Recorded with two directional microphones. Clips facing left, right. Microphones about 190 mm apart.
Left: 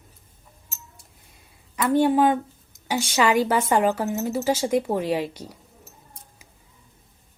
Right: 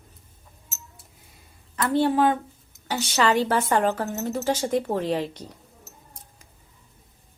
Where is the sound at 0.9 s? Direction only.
Centre (ahead or behind).